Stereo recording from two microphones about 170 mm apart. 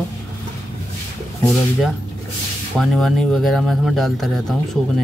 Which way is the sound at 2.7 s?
Centre (ahead or behind).